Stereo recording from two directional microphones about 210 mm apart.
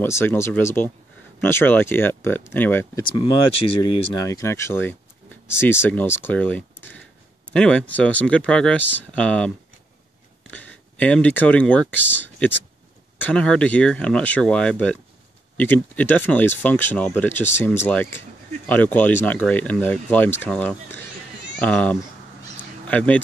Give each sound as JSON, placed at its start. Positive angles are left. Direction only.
{"t": 0.0, "sound": "speech", "side_deg": 10}
{"t": 3.0, "sound": "speech", "side_deg": 25}
{"t": 4.3, "sound": "speech", "side_deg": 15}
{"t": 10.5, "sound": "speech", "side_deg": 5}